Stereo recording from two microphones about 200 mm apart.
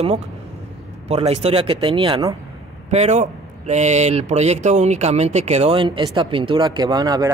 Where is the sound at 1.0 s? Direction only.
30° right (ahead or behind).